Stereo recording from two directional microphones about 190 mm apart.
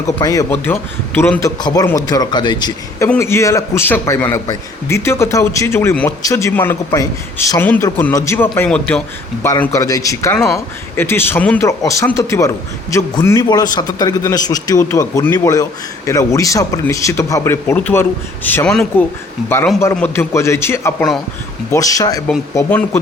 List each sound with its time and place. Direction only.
0.2 s a man's voice: 20° left (ahead or behind)
10.3 s speech: centre (ahead or behind)
10.9 s a man's voice: 10° left (ahead or behind)